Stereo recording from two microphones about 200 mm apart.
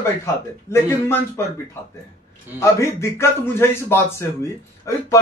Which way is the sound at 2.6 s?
15° left (ahead or behind).